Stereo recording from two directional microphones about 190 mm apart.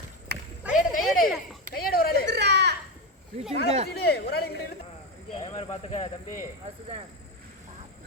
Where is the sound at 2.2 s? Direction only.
65° right (ahead or behind).